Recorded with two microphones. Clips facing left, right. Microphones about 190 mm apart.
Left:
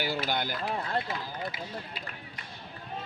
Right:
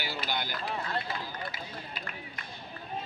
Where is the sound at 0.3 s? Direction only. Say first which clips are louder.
Left 3 dB; 50° left (ahead or behind).